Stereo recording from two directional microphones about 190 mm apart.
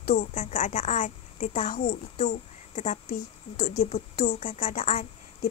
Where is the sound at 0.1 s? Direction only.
35° left (ahead or behind).